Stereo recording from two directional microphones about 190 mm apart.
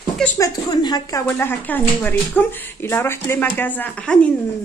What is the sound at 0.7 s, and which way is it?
Speech, 20° left (ahead or behind).